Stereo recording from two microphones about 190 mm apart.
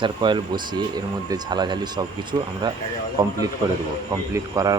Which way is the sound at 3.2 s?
20° right (ahead or behind).